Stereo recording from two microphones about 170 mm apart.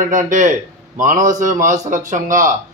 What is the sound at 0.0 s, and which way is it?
A man's voice, 50° right (ahead or behind).